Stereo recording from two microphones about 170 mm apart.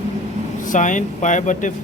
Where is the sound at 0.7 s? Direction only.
45° left (ahead or behind).